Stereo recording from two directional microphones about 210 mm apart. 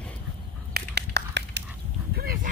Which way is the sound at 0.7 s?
50° right (ahead or behind).